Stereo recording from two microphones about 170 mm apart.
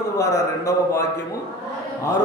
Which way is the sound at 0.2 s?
20° left (ahead or behind).